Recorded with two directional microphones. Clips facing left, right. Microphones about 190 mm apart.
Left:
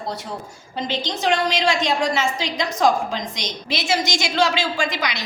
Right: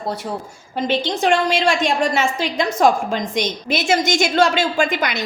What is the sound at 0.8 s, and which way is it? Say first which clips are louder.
A woman's voice: right 4 dB; 55° right (ahead or behind).